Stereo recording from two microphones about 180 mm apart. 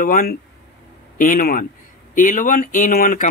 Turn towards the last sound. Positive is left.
turn(degrees=50)  # may be behind; listen again after turning